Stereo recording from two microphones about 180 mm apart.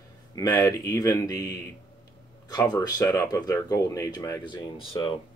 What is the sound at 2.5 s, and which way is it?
Speech, 20° left (ahead or behind).